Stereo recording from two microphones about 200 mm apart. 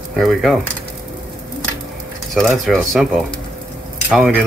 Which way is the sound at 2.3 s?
Centre (ahead or behind).